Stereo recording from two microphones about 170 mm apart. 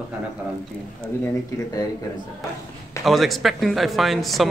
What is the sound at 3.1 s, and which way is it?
Speech, centre (ahead or behind).